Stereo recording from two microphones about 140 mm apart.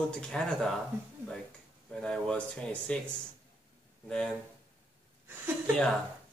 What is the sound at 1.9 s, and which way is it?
Speech, 5° left (ahead or behind).